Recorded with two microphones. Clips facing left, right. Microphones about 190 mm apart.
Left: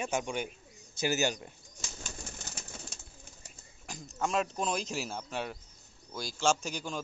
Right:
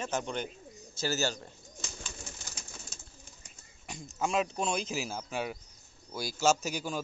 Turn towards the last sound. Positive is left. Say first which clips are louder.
# right 2 dB
turn(degrees=-5)  # may be behind; listen again after turning